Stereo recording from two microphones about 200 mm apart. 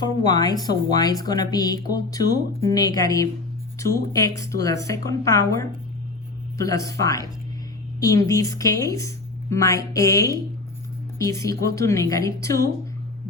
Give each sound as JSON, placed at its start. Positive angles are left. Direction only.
{"t": 0.0, "sound": "a woman's voice", "side_deg": 20}